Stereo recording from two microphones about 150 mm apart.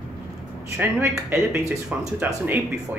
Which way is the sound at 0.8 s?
15° right (ahead or behind).